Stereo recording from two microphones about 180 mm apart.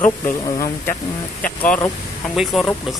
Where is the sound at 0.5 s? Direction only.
20° left (ahead or behind).